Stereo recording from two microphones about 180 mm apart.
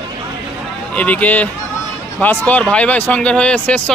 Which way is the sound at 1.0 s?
10° left (ahead or behind).